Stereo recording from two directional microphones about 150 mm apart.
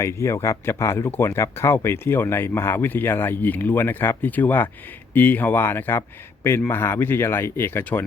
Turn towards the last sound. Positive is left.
turn(degrees=15)  # may be behind; listen again after turning